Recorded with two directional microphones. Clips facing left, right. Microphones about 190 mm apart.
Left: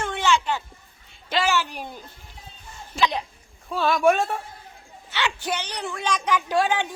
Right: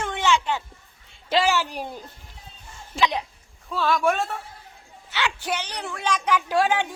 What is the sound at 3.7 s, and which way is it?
Speech, 15° left (ahead or behind).